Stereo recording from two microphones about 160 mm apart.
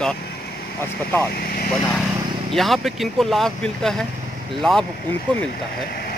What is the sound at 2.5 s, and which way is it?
Speech, centre (ahead or behind).